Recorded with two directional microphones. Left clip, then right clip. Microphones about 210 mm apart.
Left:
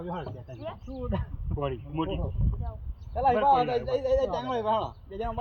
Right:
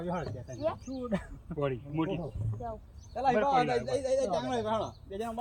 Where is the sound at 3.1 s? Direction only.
Centre (ahead or behind).